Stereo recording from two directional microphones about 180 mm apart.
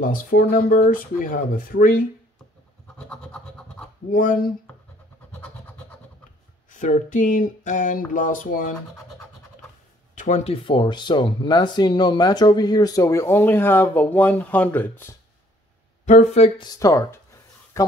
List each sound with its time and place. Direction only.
0.0 s speech: 50° left (ahead or behind)
3.0 s scratch: 5° left (ahead or behind)
4.1 s speech: 50° left (ahead or behind)
6.7 s speech: 45° left (ahead or behind)
10.1 s speech: 40° left (ahead or behind); by 15.1 s 10° left (ahead or behind)
16.1 s speech: 40° left (ahead or behind); by 17.9 s 15° left (ahead or behind)